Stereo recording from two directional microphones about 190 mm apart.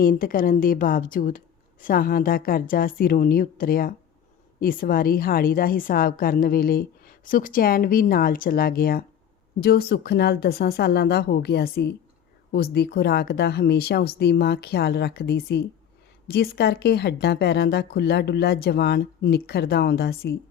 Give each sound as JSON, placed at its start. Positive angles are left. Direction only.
{"t": 0.0, "sound": "a woman's voice", "side_deg": 50}